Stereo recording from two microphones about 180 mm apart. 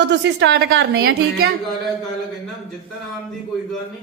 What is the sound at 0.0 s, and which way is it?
A woman's voice, 75° right (ahead or behind).